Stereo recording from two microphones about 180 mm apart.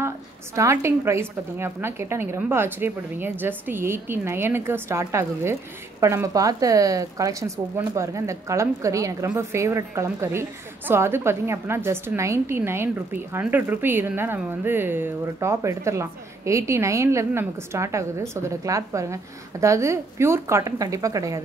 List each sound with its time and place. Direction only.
0.6 s a woman's voice: 15° right (ahead or behind)